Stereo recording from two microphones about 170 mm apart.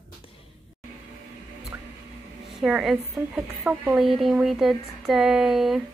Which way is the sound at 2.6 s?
Centre (ahead or behind).